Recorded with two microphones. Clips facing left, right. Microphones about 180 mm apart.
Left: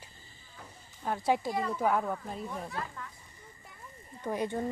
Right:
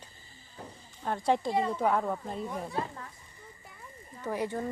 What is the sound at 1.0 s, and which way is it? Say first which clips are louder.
Speech: right 1 dB; 5° left (ahead or behind).